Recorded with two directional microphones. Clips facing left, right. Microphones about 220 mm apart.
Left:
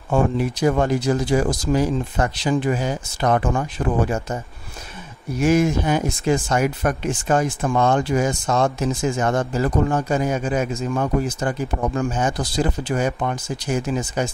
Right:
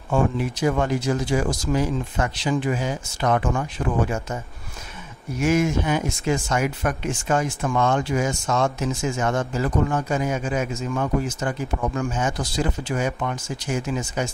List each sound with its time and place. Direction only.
0.1 s speech: 40° left (ahead or behind)
5.4 s speech: 35° left (ahead or behind)